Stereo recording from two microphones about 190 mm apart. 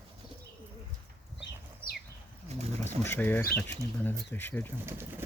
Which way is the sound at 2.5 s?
35° right (ahead or behind).